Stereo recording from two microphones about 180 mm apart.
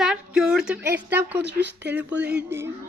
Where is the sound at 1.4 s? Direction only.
75° right (ahead or behind).